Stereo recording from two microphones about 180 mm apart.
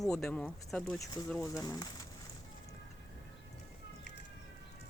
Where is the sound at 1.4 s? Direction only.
20° left (ahead or behind).